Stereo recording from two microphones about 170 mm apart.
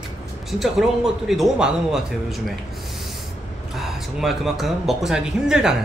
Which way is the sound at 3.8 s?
Centre (ahead or behind).